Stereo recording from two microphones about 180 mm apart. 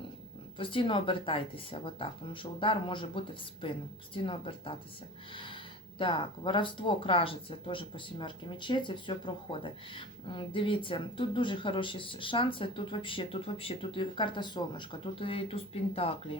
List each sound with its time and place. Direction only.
0.6 s speech: 30° left (ahead or behind)
5.3 s a sound: 30° left (ahead or behind)
6.0 s speech: 25° left (ahead or behind)